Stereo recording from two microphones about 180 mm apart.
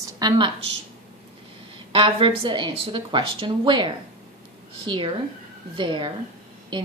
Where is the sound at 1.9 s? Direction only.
30° right (ahead or behind).